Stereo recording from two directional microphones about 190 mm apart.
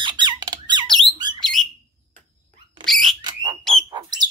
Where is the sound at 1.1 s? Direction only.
20° right (ahead or behind).